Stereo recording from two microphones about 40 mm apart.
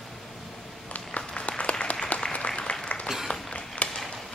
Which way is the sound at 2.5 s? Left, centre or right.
Centre.